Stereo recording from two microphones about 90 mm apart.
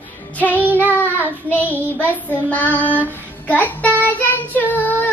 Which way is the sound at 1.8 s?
20° right (ahead or behind).